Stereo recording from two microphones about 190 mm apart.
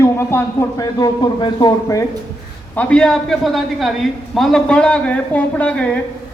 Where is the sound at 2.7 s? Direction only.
5° left (ahead or behind).